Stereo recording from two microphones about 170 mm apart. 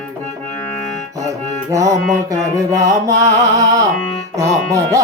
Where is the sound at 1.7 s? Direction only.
20° right (ahead or behind).